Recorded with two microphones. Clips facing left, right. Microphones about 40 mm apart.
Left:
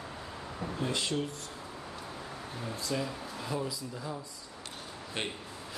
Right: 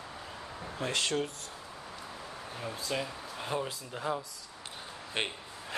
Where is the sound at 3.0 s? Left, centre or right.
Right.